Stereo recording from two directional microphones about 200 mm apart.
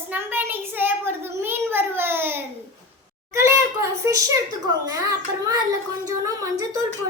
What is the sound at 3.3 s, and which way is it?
A child's voice, 15° right (ahead or behind).